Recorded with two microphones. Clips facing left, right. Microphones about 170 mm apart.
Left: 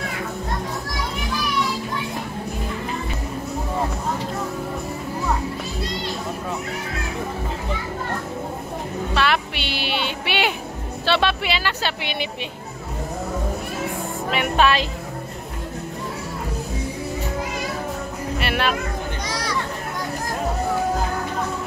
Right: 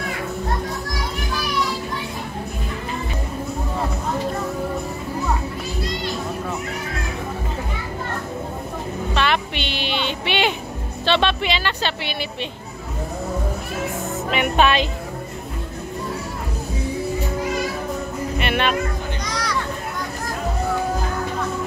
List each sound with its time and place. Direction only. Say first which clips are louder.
9.1 s music: even; 5° left (ahead or behind)
11.1 s speech: right 1 dB; 5° left (ahead or behind)
14.3 s speech: right 1 dB; centre (ahead or behind)
18.4 s music: right 1 dB; 5° left (ahead or behind)